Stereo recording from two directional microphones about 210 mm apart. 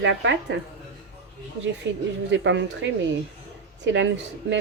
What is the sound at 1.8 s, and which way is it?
A woman's voice, 55° right (ahead or behind).